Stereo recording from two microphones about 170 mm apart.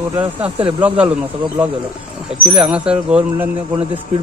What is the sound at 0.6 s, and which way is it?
Speech, 35° right (ahead or behind).